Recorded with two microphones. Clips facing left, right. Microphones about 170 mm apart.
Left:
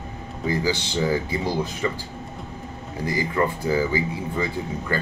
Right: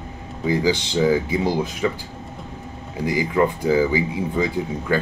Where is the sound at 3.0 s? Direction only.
15° right (ahead or behind).